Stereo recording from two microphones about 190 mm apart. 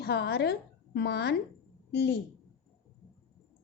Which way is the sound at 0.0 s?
55° left (ahead or behind).